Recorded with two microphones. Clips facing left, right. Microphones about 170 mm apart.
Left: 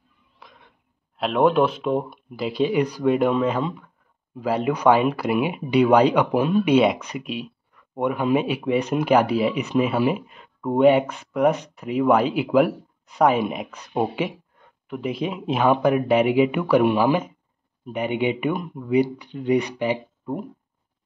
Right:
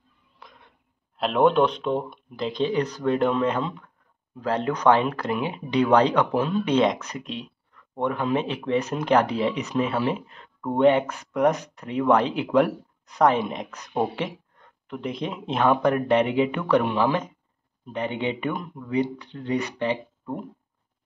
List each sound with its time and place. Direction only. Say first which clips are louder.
0.4 s speech: even; centre (ahead or behind)